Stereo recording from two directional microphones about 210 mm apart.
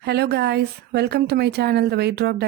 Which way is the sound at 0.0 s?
50° right (ahead or behind).